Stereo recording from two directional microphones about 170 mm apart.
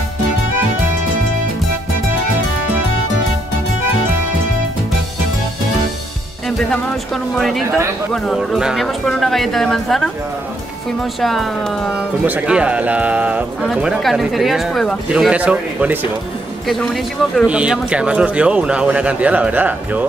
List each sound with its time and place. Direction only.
7.3 s speech: centre (ahead or behind)
7.6 s a man's voice: 15° right (ahead or behind)
8.1 s a man's voice: centre (ahead or behind)
16.6 s a man's voice: centre (ahead or behind)